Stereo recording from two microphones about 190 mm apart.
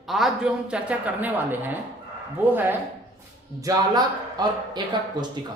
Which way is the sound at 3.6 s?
20° right (ahead or behind).